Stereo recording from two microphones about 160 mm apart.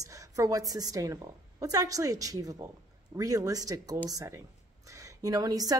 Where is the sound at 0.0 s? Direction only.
20° right (ahead or behind).